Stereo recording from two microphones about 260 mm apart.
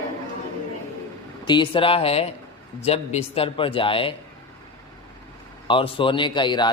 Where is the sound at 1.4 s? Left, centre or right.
Centre.